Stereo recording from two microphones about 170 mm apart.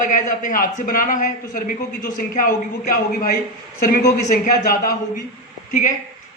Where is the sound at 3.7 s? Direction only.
55° left (ahead or behind).